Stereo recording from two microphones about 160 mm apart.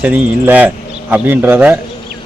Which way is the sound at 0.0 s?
10° right (ahead or behind).